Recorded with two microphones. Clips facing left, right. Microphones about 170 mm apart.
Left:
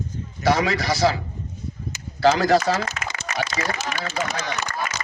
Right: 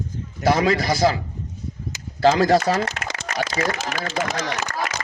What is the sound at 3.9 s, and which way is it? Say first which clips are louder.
Speech: right 2 dB; 65° right (ahead or behind).